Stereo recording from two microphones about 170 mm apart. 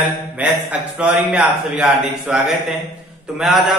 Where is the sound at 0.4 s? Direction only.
5° right (ahead or behind).